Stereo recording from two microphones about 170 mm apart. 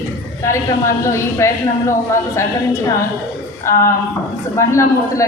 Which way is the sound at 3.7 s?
15° left (ahead or behind).